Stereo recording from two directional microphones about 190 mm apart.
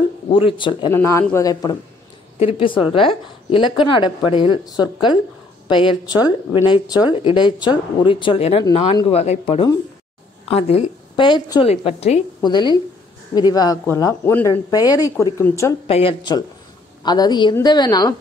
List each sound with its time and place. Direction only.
0.3 s a woman's voice: 25° left (ahead or behind)
0.9 s speech: 15° left (ahead or behind)
2.3 s a woman's voice: 30° left (ahead or behind)
11.6 s a woman's voice: 30° left (ahead or behind)
12.4 s a woman's voice: 20° left (ahead or behind)
15.9 s a woman's voice: 30° left (ahead or behind)